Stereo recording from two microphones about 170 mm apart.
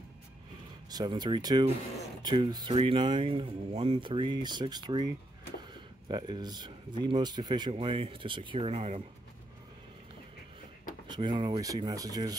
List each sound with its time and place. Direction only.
0.8 s speech: 25° right (ahead or behind)
11.1 s speech: 25° right (ahead or behind)